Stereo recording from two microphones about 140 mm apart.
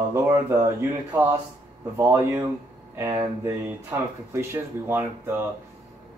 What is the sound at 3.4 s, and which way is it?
Speech, 15° right (ahead or behind).